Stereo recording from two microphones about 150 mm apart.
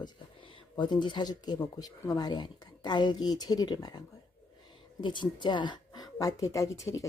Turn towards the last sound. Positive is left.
turn(degrees=20)  # may be behind; listen again after turning